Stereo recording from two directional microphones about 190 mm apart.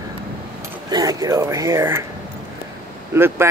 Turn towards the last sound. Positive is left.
turn(degrees=-15)  # may be behind; listen again after turning